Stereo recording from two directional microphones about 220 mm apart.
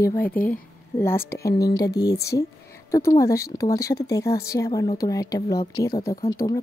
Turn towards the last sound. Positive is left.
turn(degrees=20)  # may be behind; listen again after turning